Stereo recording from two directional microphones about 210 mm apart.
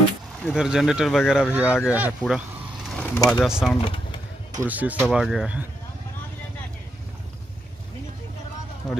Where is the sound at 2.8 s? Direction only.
5° left (ahead or behind).